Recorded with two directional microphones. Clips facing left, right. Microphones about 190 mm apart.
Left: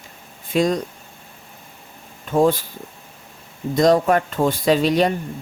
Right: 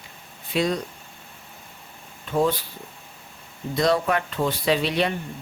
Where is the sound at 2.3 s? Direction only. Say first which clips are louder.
Left 5 dB; 45° left (ahead or behind).